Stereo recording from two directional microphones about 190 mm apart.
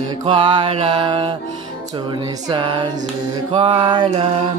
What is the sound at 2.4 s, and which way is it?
Music, 25° right (ahead or behind).